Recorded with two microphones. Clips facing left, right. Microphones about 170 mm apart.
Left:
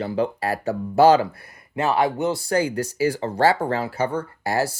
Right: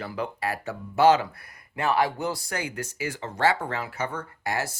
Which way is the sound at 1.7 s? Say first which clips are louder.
Left 4 dB; 25° left (ahead or behind).